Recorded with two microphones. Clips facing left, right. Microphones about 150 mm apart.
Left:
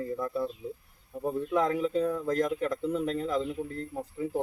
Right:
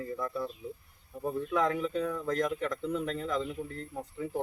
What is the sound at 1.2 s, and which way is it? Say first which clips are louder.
Speech: left 2 dB; 10° left (ahead or behind).